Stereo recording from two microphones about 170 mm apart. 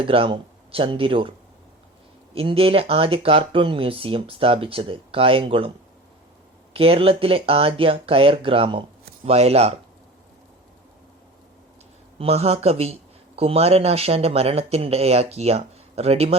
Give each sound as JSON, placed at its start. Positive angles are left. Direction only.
{"t": 0.0, "sound": "speech", "side_deg": -30}
{"t": 2.3, "sound": "speech", "side_deg": -35}
{"t": 6.7, "sound": "speech", "side_deg": -35}
{"t": 12.2, "sound": "speech", "side_deg": -35}